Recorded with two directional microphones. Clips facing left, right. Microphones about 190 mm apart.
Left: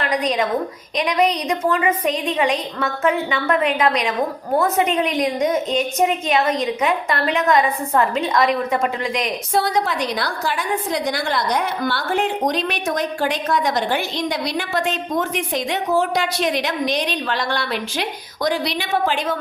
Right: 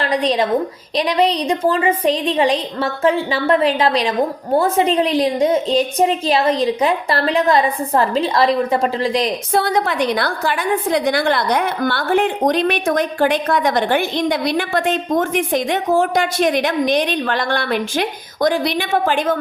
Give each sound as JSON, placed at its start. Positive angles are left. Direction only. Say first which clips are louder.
{"t": 0.0, "sound": "a woman's voice", "louder": "right 3 dB", "side_deg": -30}
{"t": 9.5, "sound": "a woman's voice", "louder": "even", "side_deg": -55}